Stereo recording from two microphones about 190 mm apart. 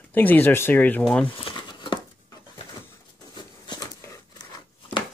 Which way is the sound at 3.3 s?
20° left (ahead or behind).